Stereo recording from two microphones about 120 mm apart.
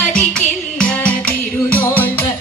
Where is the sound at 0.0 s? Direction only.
10° left (ahead or behind).